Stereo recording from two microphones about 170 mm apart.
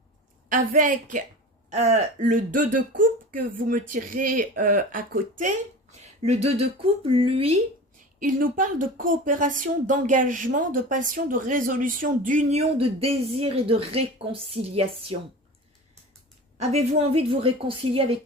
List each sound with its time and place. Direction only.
0.4 s speech: 55° right (ahead or behind)
1.7 s speech: 40° right (ahead or behind); by 5.2 s 55° right (ahead or behind)
6.2 s a woman's voice: 35° right (ahead or behind)
8.2 s speech: 55° right (ahead or behind); by 15.2 s 35° right (ahead or behind)
16.6 s a woman's voice: 40° right (ahead or behind)